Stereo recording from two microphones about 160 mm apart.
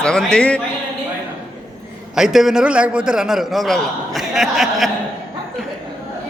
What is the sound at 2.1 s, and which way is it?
A man's voice, 5° right (ahead or behind).